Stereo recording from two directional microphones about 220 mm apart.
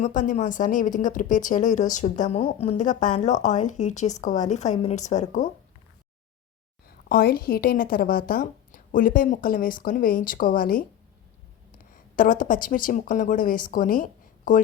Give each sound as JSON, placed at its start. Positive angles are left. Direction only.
{"t": 0.0, "sound": "a woman's voice", "side_deg": 35}
{"t": 7.1, "sound": "a woman's voice", "side_deg": 45}